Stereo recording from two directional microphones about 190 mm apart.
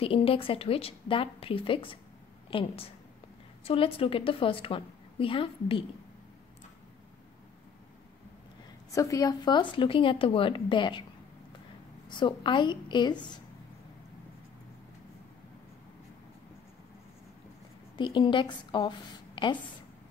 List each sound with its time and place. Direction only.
0.0 s a woman's voice: 30° left (ahead or behind)
8.9 s a woman's voice: 15° left (ahead or behind)
12.1 s a woman's voice: 25° left (ahead or behind)
17.9 s a woman's voice: 25° left (ahead or behind)